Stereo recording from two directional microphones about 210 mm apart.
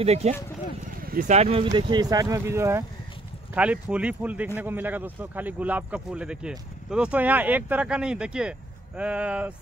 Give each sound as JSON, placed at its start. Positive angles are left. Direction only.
{"t": 0.0, "sound": "speech", "side_deg": -30}
{"t": 1.0, "sound": "a sound", "side_deg": -45}
{"t": 1.3, "sound": "speech", "side_deg": -30}